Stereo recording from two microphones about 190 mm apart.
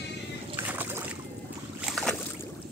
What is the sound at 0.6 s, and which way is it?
Splash, 10° right (ahead or behind).